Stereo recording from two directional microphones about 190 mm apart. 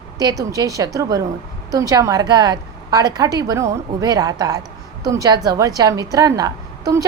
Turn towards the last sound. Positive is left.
turn(degrees=-20)  # may be behind; listen again after turning